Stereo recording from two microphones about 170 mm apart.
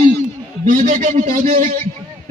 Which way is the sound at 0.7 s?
50° right (ahead or behind).